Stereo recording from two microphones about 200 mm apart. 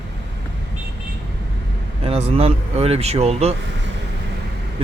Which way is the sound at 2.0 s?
30° right (ahead or behind).